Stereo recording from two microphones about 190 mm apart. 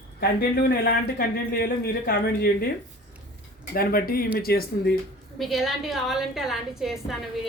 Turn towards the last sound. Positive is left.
turn(degrees=0)  # may be behind; listen again after turning